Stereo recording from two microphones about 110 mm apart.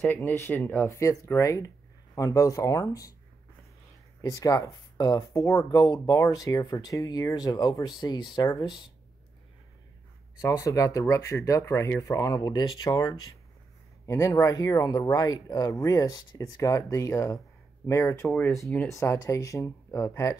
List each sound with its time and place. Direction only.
0.1 s speech: 20° left (ahead or behind)
4.2 s speech: 35° left (ahead or behind)
10.4 s speech: 30° left (ahead or behind)